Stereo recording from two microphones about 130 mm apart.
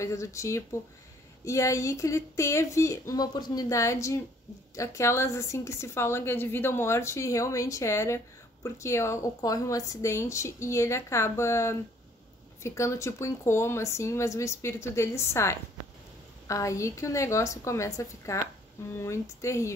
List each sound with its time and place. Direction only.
0.0 s a woman's voice: 25° left (ahead or behind)